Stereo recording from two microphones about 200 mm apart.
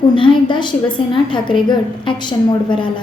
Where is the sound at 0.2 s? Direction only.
25° left (ahead or behind).